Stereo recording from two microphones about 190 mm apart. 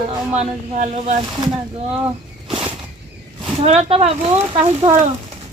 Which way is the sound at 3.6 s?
30° right (ahead or behind).